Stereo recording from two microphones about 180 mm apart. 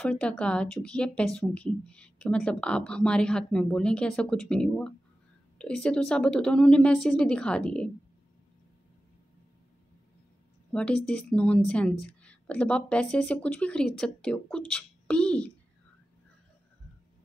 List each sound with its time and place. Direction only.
0.0 s speech: 5° left (ahead or behind)
10.7 s speech: 5° left (ahead or behind)